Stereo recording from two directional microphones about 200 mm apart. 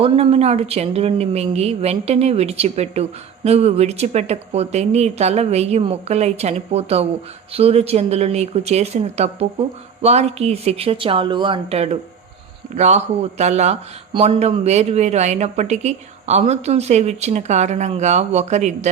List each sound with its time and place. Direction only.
0.0 s speech: 30° right (ahead or behind)